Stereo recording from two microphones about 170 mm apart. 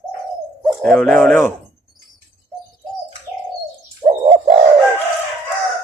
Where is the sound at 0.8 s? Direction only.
5° left (ahead or behind).